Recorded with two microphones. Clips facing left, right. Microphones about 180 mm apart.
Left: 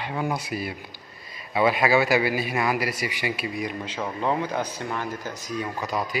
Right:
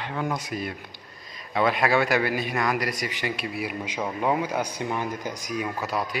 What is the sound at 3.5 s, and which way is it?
A man's voice, 10° right (ahead or behind).